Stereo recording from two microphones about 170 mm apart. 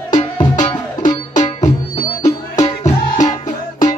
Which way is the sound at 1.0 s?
45° left (ahead or behind).